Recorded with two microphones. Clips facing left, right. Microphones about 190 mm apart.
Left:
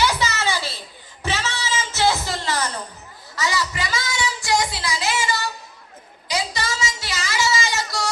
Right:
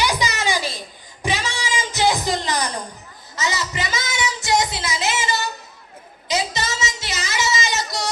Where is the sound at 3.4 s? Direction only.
20° right (ahead or behind).